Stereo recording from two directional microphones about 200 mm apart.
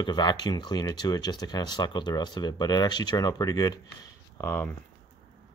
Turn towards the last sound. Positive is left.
turn(degrees=15)  # may be behind; listen again after turning